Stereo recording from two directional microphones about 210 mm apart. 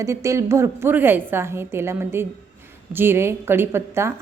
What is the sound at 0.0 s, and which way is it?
A woman's voice, 15° right (ahead or behind).